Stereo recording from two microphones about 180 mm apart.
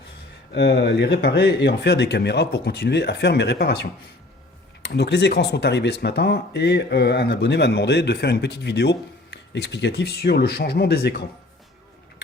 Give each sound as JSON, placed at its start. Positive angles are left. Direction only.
{"t": 0.5, "sound": "speech", "side_deg": 65}